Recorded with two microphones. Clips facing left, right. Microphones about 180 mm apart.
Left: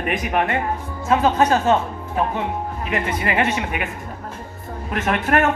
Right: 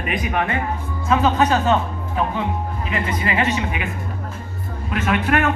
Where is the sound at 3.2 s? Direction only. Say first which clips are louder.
Right 1 dB; 55° left (ahead or behind).